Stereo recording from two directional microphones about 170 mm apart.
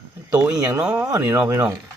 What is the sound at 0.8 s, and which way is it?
Speech, 10° right (ahead or behind).